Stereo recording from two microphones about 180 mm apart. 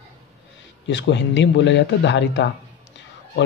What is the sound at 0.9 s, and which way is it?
A man's voice, 90° left.